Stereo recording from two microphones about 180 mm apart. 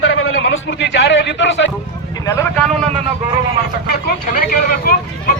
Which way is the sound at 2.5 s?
5° left (ahead or behind).